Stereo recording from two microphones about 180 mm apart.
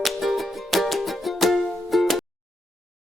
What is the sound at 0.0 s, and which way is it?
Music, centre (ahead or behind).